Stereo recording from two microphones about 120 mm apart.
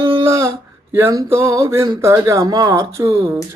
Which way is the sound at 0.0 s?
45° right (ahead or behind).